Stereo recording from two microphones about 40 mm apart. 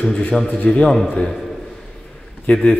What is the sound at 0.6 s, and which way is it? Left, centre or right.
Speech, left.